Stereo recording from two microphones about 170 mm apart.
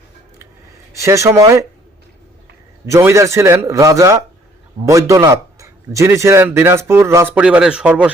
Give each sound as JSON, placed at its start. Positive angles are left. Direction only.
{"t": 0.9, "sound": "a man's voice", "side_deg": -15}
{"t": 2.8, "sound": "a man's voice", "side_deg": -15}